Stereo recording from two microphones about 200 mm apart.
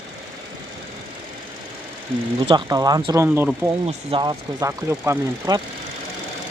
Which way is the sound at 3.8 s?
25° right (ahead or behind).